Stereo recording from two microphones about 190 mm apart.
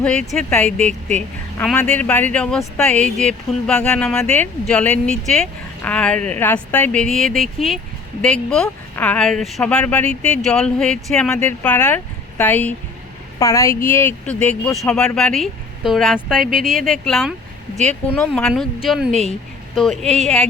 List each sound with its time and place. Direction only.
0.0 s speech: 5° left (ahead or behind)